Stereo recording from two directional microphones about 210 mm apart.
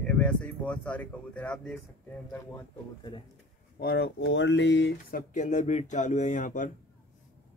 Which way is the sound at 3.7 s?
50° left (ahead or behind).